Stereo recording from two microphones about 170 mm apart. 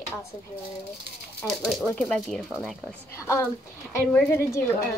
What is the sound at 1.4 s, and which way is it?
Speech, centre (ahead or behind).